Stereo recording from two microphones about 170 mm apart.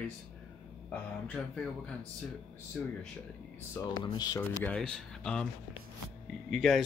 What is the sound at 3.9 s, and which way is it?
Speech, 25° left (ahead or behind).